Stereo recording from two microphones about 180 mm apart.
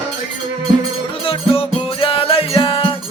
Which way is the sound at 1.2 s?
30° left (ahead or behind).